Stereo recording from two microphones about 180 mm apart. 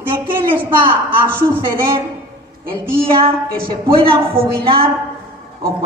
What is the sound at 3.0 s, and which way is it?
Speech, 30° right (ahead or behind).